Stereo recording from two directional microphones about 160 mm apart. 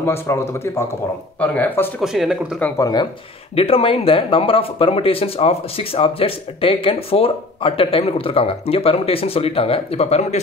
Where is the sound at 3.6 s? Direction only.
35° left (ahead or behind).